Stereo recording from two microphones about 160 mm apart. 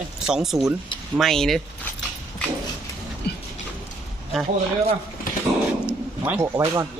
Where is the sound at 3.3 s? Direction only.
80° left.